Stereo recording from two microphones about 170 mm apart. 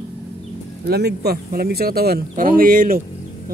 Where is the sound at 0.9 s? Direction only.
70° right (ahead or behind).